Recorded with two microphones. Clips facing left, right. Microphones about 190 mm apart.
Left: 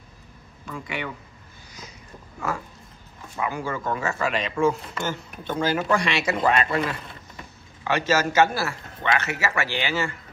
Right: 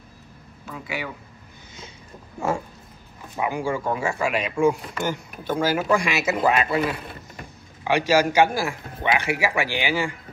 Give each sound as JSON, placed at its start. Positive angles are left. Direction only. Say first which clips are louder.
{"t": 0.7, "sound": "a man's voice", "louder": "even", "side_deg": -5}
{"t": 2.4, "sound": "speech", "louder": "right 5 dB", "side_deg": -25}
{"t": 3.3, "sound": "a man's voice", "louder": "right 3 dB", "side_deg": -15}